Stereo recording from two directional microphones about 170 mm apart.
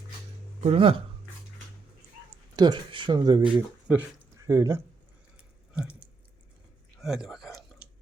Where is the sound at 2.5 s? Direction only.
25° right (ahead or behind).